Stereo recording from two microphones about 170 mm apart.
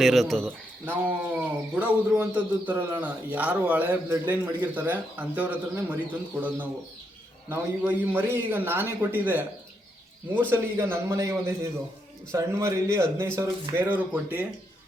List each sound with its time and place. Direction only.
0.0 s speech: centre (ahead or behind)
0.9 s a man's voice: 10° right (ahead or behind)